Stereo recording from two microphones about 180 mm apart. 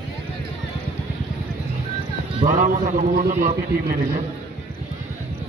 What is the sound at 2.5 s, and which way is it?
A man's voice, 50° right (ahead or behind).